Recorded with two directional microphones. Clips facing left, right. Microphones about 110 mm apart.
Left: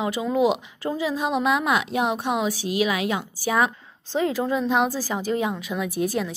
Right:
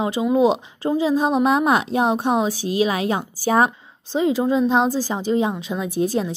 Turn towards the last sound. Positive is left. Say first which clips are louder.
# right 3 dB
turn(degrees=-30)  # may be behind; listen again after turning